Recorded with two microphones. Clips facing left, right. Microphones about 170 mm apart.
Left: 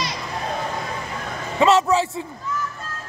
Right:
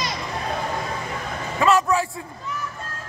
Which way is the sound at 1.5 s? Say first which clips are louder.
Left 3 dB; 25° left (ahead or behind).